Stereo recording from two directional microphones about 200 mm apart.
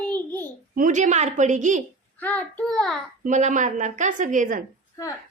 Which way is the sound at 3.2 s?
40° right (ahead or behind).